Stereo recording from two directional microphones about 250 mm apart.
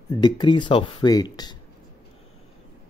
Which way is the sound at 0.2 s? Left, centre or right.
Centre.